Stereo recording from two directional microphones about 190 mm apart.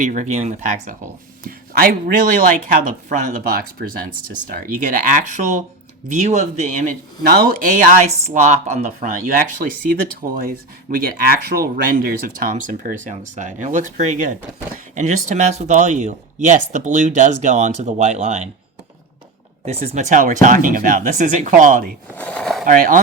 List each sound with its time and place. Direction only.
0.0 s speech: 40° right (ahead or behind)
1.5 s a sound: 50° right (ahead or behind)
2.7 s speech: 45° right (ahead or behind)
7.2 s speech: 50° right (ahead or behind); by 18.4 s 35° right (ahead or behind)
19.6 s speech: 35° right (ahead or behind)
22.1 s speech: 5° left (ahead or behind)
22.6 s speech: 45° right (ahead or behind)